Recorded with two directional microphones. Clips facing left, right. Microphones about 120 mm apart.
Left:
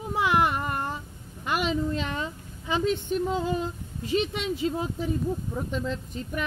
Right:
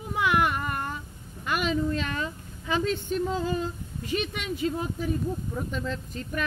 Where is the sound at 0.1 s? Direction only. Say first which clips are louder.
Left 1 dB; 25° left (ahead or behind).